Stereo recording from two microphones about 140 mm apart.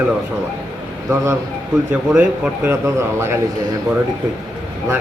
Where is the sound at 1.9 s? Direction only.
10° right (ahead or behind).